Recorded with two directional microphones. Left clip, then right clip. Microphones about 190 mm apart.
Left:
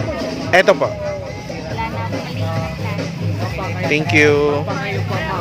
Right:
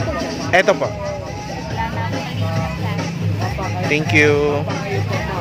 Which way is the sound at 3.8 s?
15° left (ahead or behind).